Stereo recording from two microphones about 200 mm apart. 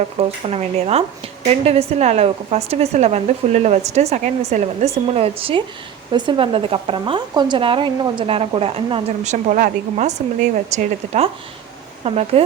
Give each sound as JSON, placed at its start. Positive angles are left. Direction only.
{"t": 0.2, "sound": "a woman's voice", "side_deg": -30}